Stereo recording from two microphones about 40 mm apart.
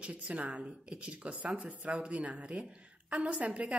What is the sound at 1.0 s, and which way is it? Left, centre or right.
Speech, right.